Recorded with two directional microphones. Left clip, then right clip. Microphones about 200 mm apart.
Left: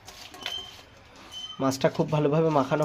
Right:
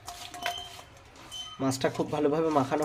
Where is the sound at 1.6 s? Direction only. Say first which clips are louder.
Left 4 dB; 15° left (ahead or behind).